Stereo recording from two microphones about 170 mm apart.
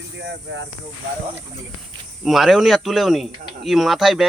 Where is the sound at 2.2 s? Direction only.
Centre (ahead or behind).